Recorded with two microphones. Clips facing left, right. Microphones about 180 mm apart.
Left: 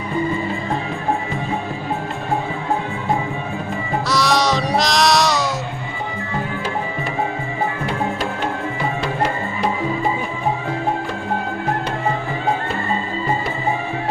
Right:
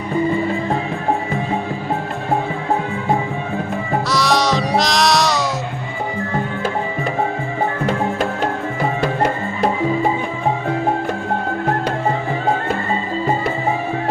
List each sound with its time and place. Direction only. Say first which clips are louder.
4.1 s music: even; centre (ahead or behind)
7.9 s music: right 3 dB; 45° right (ahead or behind)